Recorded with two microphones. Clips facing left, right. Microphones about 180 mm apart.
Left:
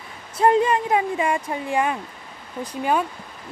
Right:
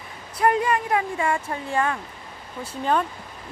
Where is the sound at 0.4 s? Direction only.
25° left (ahead or behind).